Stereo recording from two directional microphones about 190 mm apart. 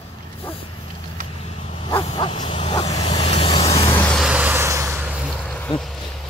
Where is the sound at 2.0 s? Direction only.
25° left (ahead or behind).